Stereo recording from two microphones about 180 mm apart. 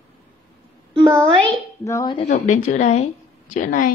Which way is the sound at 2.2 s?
45° left (ahead or behind).